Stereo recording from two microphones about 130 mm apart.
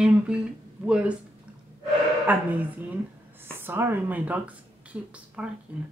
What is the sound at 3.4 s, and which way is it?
Speech, 15° right (ahead or behind).